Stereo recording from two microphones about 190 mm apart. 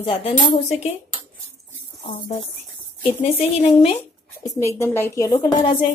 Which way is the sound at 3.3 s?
30° left (ahead or behind).